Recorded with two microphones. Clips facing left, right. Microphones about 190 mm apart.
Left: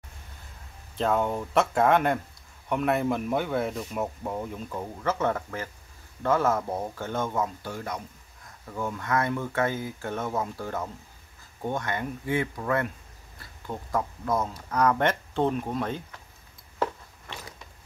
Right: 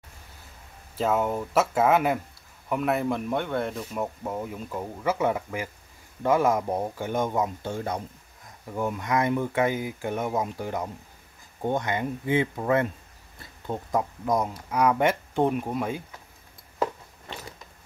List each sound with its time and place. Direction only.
0.9 s speech: 5° right (ahead or behind)